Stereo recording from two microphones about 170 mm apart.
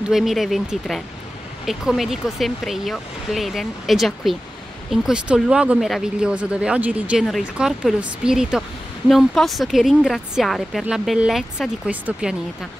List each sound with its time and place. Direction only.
0.1 s speech: centre (ahead or behind)